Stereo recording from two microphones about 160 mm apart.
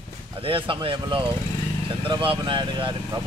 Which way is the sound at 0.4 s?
35° right (ahead or behind).